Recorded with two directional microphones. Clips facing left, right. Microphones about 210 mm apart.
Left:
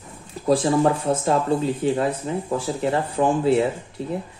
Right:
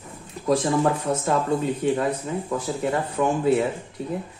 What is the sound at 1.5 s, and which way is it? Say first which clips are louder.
Speech: left 1 dB; 30° left (ahead or behind).